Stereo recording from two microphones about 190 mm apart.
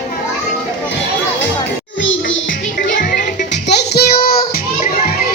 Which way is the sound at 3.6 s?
60° left (ahead or behind).